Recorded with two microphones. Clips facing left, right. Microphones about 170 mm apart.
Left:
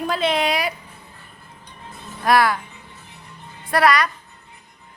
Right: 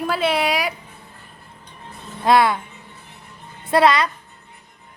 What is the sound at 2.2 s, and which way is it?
Speech, 25° right (ahead or behind).